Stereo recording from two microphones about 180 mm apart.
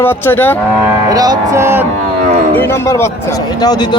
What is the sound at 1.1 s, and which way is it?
Speech, 20° right (ahead or behind).